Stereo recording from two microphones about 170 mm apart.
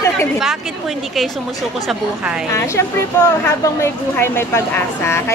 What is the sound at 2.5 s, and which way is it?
Speech, 15° left (ahead or behind).